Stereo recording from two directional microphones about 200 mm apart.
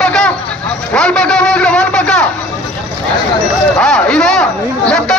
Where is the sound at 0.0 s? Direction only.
5° left (ahead or behind).